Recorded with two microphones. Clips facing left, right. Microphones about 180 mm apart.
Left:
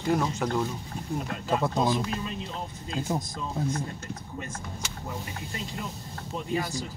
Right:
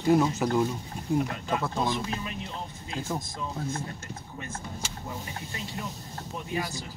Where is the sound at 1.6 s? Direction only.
35° left (ahead or behind).